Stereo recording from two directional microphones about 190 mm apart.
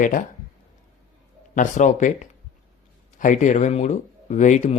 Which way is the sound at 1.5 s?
40° left (ahead or behind).